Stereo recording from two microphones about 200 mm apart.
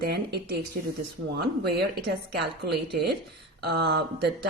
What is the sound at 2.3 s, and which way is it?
Speech, 55° right (ahead or behind).